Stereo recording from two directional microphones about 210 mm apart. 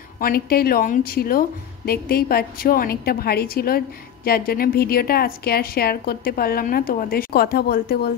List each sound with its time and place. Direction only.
0.2 s a woman's voice: 45° left (ahead or behind)